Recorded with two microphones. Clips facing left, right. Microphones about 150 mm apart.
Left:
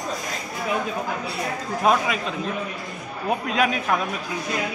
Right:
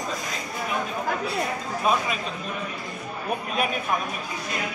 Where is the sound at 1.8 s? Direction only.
90° left.